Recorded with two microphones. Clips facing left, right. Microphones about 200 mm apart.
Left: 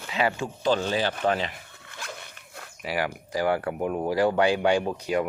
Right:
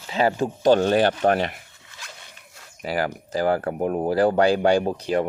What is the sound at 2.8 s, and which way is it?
Speech, 35° right (ahead or behind).